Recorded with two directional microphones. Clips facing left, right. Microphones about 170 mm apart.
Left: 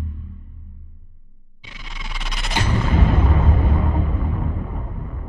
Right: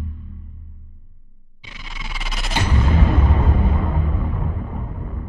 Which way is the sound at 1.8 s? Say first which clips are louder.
Right 1 dB; centre (ahead or behind).